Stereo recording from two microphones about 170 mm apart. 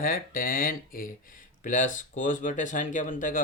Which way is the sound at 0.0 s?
55° left (ahead or behind).